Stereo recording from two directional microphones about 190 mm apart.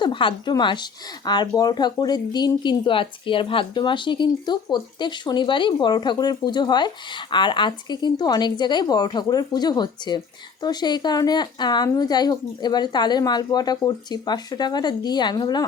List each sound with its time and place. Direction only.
0.0 s speech: 25° left (ahead or behind)